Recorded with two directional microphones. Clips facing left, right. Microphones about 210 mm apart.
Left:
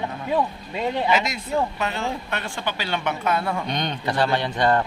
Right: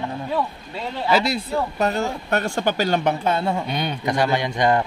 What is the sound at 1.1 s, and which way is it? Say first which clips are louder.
Speech: right 3 dB; 35° right (ahead or behind).